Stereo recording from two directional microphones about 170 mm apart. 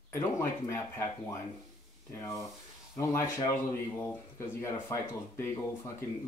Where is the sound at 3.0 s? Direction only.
20° left (ahead or behind).